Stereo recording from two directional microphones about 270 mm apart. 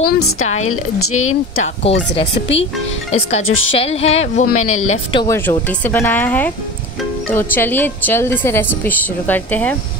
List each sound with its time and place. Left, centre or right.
0.7 s speech: left
1.6 s speech: left
4.7 s speech: left
5.1 s a woman's voice: centre